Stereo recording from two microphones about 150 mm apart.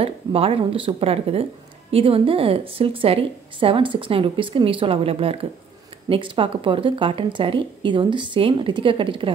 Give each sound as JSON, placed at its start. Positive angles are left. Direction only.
{"t": 0.0, "sound": "speech", "side_deg": -40}